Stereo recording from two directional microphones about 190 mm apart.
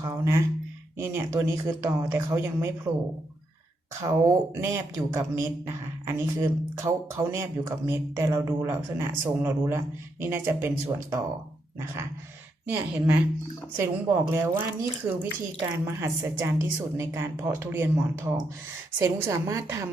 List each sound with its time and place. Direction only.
0.0 s speech: 15° right (ahead or behind)
4.0 s speech: 15° right (ahead or behind)
12.6 s speech: 10° right (ahead or behind)